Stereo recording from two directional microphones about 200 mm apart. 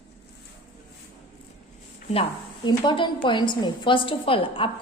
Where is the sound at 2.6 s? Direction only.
20° left (ahead or behind).